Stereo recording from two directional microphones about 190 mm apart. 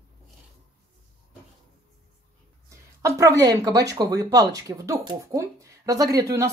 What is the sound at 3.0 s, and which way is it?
Speech, 15° right (ahead or behind).